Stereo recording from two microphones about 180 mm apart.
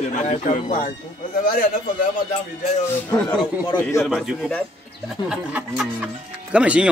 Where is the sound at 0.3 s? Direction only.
45° left (ahead or behind).